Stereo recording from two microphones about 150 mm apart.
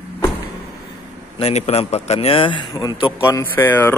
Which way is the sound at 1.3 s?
45° left (ahead or behind).